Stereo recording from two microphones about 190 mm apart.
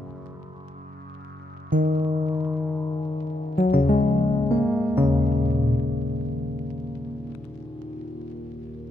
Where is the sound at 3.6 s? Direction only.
50° left (ahead or behind).